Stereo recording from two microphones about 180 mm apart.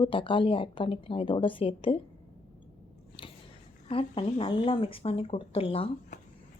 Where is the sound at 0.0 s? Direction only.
30° left (ahead or behind).